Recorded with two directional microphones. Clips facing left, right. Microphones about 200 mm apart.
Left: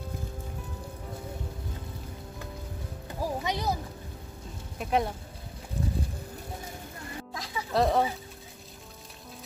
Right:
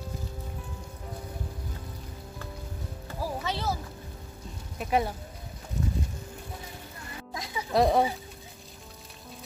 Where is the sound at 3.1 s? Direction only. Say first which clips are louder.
Left 2 dB; 15° left (ahead or behind).